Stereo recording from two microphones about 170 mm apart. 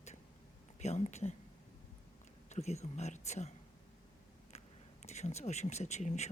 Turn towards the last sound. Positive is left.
turn(degrees=40)  # may be behind; listen again after turning